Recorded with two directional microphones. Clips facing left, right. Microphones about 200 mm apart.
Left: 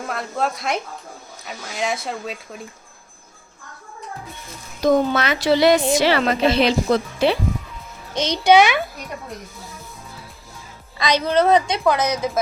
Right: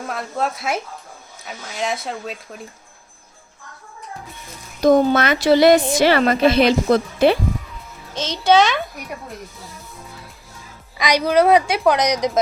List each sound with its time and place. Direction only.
0.1 s speech: centre (ahead or behind)
4.8 s speech: 50° right (ahead or behind)
8.1 s a child's voice: 15° left (ahead or behind)
10.9 s a woman's voice: 10° right (ahead or behind)